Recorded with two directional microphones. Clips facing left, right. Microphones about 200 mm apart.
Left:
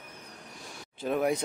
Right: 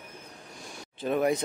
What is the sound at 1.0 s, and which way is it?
Speech, 5° left (ahead or behind).